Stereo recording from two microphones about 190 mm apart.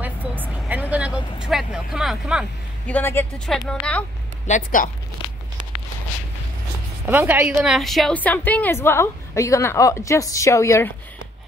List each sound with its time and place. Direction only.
0.0 s vehicle: 10° right (ahead or behind)
2.9 s a woman's voice: 10° left (ahead or behind)
4.5 s speech: 40° left (ahead or behind)
5.2 s tearing: 25° left (ahead or behind)
7.1 s a woman's voice: 10° right (ahead or behind); by 10.9 s 15° left (ahead or behind)